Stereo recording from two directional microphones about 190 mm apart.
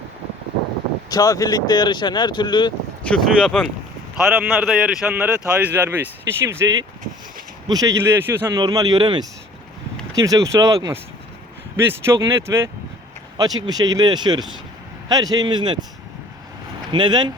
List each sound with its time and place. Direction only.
1.1 s speech: 20° left (ahead or behind)
3.0 s a man's voice: 5° left (ahead or behind); by 6.7 s 15° right (ahead or behind)
7.7 s speech: 20° right (ahead or behind)
16.9 s speech: 25° right (ahead or behind)